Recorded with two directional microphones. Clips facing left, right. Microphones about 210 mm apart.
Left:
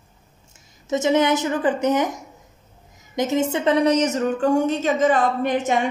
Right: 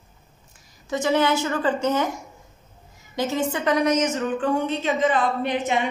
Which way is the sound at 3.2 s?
20° left (ahead or behind).